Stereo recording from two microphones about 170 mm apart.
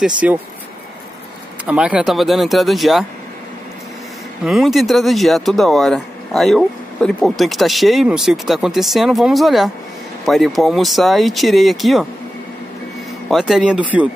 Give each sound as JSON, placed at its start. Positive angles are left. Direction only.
{"t": 0.0, "sound": "speech", "side_deg": -10}
{"t": 1.7, "sound": "speech", "side_deg": -5}
{"t": 4.5, "sound": "speech", "side_deg": 0}
{"t": 13.3, "sound": "speech", "side_deg": 0}